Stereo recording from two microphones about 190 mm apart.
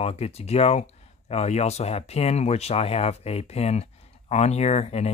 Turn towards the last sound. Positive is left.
turn(degrees=35)  # may be behind; listen again after turning